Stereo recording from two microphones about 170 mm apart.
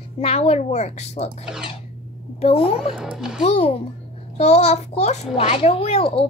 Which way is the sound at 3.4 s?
35° left (ahead or behind).